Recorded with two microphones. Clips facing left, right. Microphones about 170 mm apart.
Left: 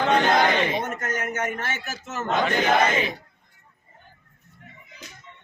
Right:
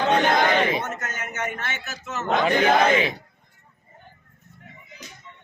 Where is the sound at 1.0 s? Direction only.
50° left (ahead or behind).